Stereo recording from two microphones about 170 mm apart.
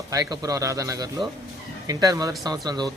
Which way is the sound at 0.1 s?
20° right (ahead or behind).